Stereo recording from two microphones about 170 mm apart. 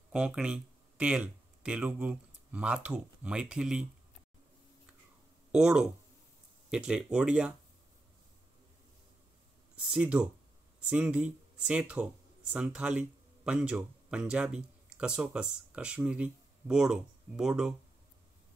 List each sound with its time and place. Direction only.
0.1 s speech: 5° right (ahead or behind)
5.5 s speech: 5° right (ahead or behind)
9.8 s speech: 5° right (ahead or behind)